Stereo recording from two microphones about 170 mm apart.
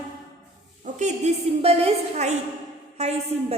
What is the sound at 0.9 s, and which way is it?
A woman's voice, 45° right (ahead or behind).